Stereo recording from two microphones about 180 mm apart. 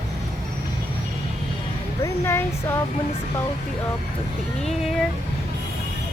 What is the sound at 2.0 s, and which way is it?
Speech, 15° left (ahead or behind).